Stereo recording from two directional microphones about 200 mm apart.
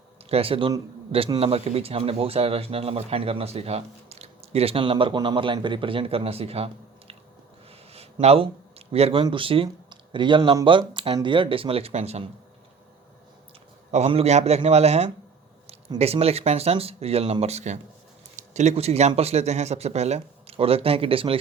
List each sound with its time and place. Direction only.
0.3 s a man's voice: 30° right (ahead or behind)
7.9 s a sound: 30° right (ahead or behind)
8.9 s a man's voice: 30° right (ahead or behind)
13.9 s speech: 30° right (ahead or behind)